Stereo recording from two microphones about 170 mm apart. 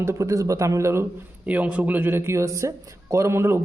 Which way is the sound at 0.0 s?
15° right (ahead or behind).